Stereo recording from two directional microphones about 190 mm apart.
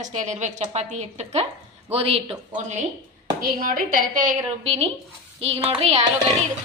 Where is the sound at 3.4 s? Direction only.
45° right (ahead or behind).